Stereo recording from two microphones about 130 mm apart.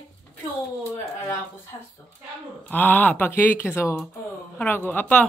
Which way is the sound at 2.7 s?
15° left (ahead or behind).